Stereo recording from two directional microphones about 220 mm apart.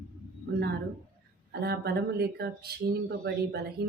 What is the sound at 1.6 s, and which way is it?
Speech, 45° right (ahead or behind).